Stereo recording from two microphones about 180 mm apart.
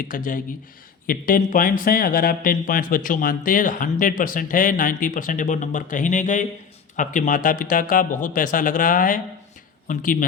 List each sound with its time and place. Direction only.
0.0 s speech: 50° left (ahead or behind)